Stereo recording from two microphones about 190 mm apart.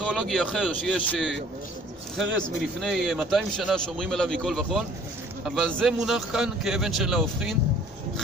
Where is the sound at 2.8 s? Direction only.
Centre (ahead or behind).